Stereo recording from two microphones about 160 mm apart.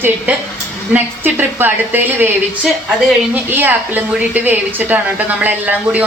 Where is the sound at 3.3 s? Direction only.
10° right (ahead or behind).